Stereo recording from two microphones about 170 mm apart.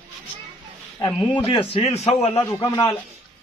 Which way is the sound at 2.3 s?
15° left (ahead or behind).